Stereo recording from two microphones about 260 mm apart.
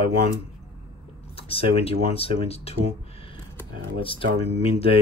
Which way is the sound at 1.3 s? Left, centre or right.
Left.